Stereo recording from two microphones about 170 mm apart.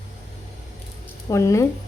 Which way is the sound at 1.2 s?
20° left (ahead or behind).